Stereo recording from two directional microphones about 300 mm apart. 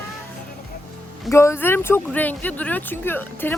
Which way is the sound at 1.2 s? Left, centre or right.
Centre.